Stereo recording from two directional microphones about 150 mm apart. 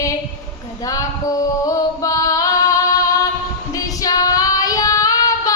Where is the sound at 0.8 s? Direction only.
20° left (ahead or behind).